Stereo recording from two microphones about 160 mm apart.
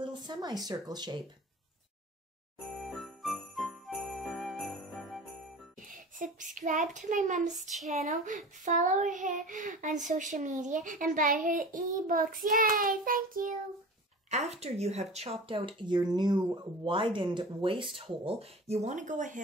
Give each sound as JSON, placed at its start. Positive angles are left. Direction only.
{"t": 0.0, "sound": "speech", "side_deg": -30}
{"t": 2.7, "sound": "jingle bell", "side_deg": 0}
{"t": 5.9, "sound": "speech", "side_deg": -55}
{"t": 14.3, "sound": "speech", "side_deg": -45}